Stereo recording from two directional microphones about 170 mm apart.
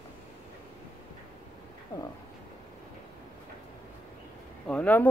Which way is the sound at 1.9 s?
20° left (ahead or behind).